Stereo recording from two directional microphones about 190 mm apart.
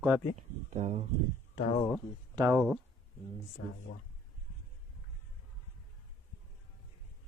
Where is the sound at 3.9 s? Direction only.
50° left (ahead or behind).